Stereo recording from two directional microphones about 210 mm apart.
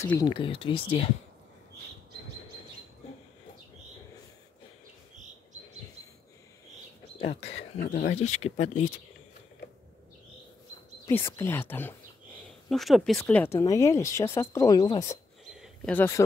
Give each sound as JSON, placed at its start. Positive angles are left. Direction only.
{"t": 0.0, "sound": "speech", "side_deg": 20}
{"t": 7.2, "sound": "speech", "side_deg": 30}
{"t": 7.8, "sound": "speech", "side_deg": 50}
{"t": 8.5, "sound": "speech", "side_deg": 35}
{"t": 11.1, "sound": "speech", "side_deg": 10}
{"t": 15.5, "sound": "a sound", "side_deg": 0}